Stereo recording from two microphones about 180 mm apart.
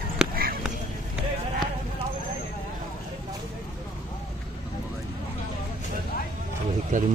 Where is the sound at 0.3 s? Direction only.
55° right (ahead or behind).